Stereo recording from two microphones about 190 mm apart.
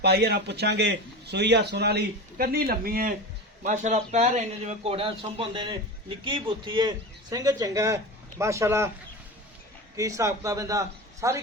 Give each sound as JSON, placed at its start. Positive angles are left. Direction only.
{"t": 0.0, "sound": "a man's voice", "side_deg": -60}
{"t": 3.6, "sound": "speech", "side_deg": -40}
{"t": 9.9, "sound": "a man's voice", "side_deg": -15}